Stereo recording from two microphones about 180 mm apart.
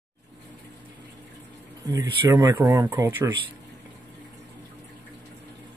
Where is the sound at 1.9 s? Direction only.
20° right (ahead or behind).